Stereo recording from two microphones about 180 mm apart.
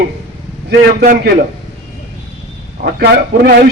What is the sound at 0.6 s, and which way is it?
Speech, 60° right (ahead or behind).